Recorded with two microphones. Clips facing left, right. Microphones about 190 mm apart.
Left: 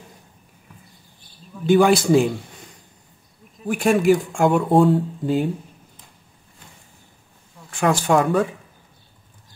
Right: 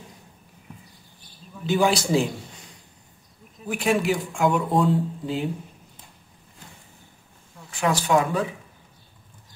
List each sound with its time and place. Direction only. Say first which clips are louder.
1.8 s speech: left 5 dB; 55° left (ahead or behind)
3.6 s speech: left 6 dB; 50° left (ahead or behind)
7.7 s speech: left 3 dB; 50° left (ahead or behind)